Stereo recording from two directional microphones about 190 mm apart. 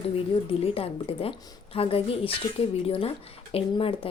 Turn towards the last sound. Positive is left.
turn(degrees=30)  # may be behind; listen again after turning